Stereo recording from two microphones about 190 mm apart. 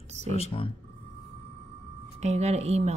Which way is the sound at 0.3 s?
30° left (ahead or behind).